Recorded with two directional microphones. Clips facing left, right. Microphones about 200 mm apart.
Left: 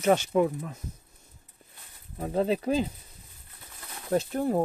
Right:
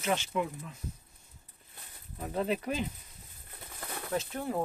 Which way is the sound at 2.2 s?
30° left (ahead or behind).